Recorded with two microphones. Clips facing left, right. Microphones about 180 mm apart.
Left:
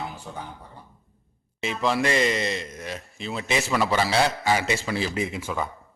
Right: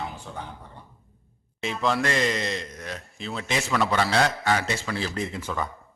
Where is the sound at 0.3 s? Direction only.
5° left (ahead or behind).